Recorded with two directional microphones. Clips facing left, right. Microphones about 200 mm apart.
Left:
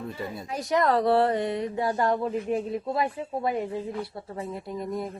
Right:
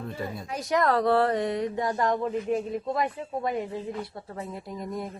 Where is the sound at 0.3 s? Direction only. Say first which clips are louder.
Left 1 dB; centre (ahead or behind).